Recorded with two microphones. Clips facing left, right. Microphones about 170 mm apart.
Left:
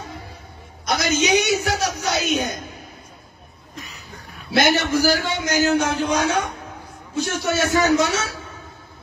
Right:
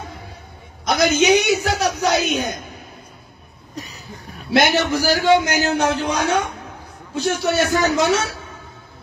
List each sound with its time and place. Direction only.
0.8 s a man's voice: 60° right (ahead or behind)
3.7 s throat clearing: 35° right (ahead or behind)
4.6 s a man's voice: 60° right (ahead or behind)